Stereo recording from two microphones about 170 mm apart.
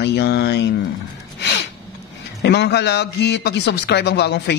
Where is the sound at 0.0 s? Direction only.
85° left.